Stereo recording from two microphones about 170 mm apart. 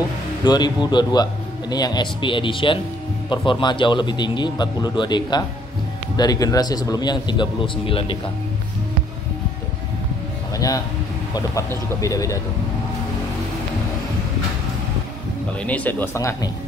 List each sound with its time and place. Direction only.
0.4 s a man's voice: 25° left (ahead or behind)
10.5 s music: 20° left (ahead or behind)
11.3 s a man's voice: 20° left (ahead or behind)
15.6 s speech: 10° left (ahead or behind)